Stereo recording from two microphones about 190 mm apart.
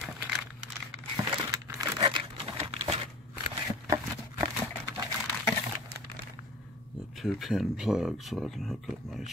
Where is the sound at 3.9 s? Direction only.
20° right (ahead or behind).